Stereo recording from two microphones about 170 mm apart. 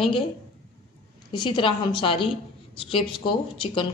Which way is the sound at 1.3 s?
30° left (ahead or behind).